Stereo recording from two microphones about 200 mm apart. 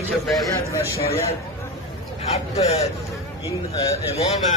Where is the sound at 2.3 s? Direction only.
30° left (ahead or behind).